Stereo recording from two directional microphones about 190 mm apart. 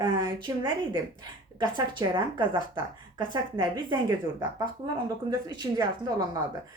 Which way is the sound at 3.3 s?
25° right (ahead or behind).